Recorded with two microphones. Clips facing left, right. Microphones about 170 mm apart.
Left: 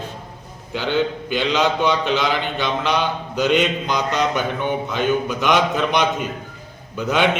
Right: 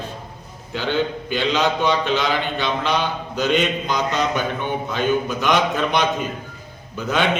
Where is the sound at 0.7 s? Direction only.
15° left (ahead or behind).